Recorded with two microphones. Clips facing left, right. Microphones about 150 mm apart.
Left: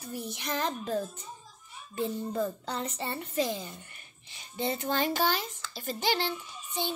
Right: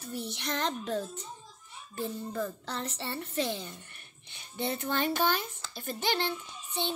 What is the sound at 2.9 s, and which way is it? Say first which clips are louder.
A woman's voice: left 2 dB; 5° left (ahead or behind).